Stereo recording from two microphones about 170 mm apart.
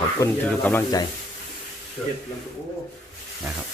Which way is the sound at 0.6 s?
10° left (ahead or behind).